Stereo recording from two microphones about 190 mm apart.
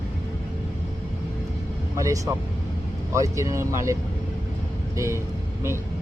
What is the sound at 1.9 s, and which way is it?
Speech, 15° right (ahead or behind).